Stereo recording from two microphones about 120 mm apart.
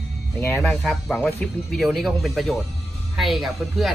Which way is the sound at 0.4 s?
15° left (ahead or behind).